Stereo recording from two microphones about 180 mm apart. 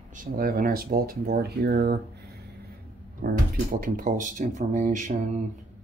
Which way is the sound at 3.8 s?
50° right (ahead or behind).